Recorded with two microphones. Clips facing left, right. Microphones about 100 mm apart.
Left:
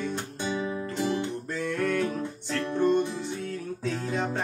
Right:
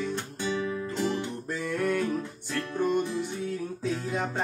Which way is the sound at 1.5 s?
5° right (ahead or behind).